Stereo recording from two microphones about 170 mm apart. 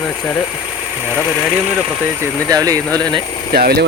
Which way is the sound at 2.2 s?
20° right (ahead or behind).